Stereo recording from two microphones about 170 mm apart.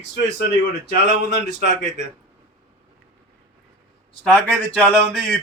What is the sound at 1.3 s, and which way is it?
Speech, 80° left.